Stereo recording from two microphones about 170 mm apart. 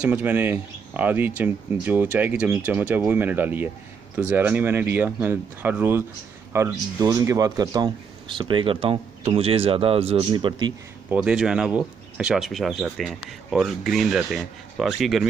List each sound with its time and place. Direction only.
0.0 s speech: 10° right (ahead or behind); by 10.7 s 30° right (ahead or behind)
11.1 s speech: 5° right (ahead or behind)